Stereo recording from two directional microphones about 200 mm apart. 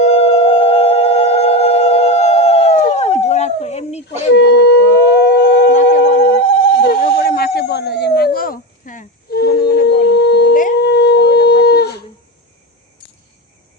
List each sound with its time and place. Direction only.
0.0 s a sound: 30° left (ahead or behind)
1.5 s howl: 30° left (ahead or behind)
4.4 s howl: 55° left (ahead or behind)
5.2 s siren: 55° left (ahead or behind)
10.8 s howl: 55° left (ahead or behind)